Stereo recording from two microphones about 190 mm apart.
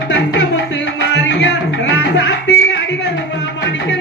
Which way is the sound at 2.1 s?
70° left (ahead or behind).